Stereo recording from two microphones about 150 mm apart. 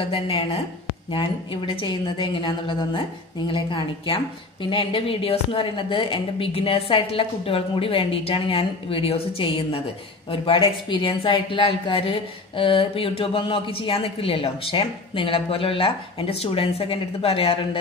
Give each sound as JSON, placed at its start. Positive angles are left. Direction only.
{"t": 0.0, "sound": "a woman's voice", "side_deg": 40}